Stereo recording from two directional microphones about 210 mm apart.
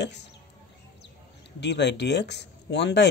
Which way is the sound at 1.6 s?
55° left (ahead or behind).